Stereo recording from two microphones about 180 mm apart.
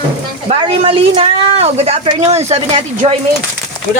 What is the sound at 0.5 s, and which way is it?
Speech, 30° right (ahead or behind).